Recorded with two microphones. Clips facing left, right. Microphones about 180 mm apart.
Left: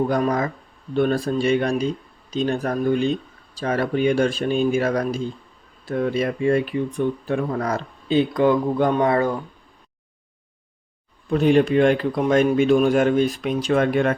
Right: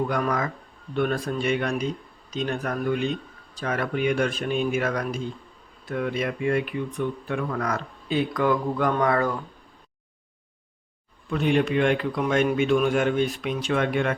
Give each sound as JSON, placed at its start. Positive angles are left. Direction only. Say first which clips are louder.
{"t": 0.1, "sound": "a man's voice", "louder": "left 5 dB", "side_deg": 30}
{"t": 11.3, "sound": "a man's voice", "louder": "left 6 dB", "side_deg": 35}